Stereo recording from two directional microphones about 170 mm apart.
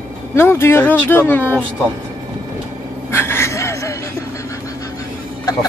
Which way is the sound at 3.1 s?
15° left (ahead or behind).